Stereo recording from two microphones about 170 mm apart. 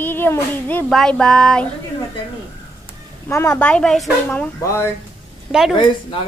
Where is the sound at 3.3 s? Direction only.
15° left (ahead or behind).